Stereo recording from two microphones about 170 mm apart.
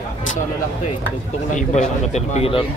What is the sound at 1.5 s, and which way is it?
A man's voice, 45° left (ahead or behind).